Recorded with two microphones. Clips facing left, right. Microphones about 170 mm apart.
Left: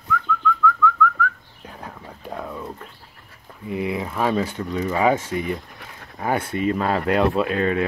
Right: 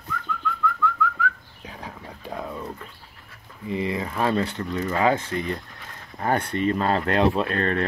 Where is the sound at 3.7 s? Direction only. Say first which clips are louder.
Left 1 dB; 10° left (ahead or behind).